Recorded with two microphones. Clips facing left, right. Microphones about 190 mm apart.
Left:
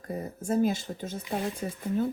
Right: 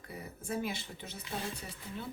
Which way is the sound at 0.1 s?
50° left (ahead or behind).